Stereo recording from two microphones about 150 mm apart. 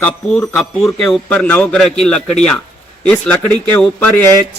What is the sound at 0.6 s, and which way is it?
Speech, 5° left (ahead or behind).